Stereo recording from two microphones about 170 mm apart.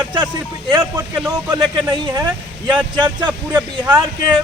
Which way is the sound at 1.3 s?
25° right (ahead or behind).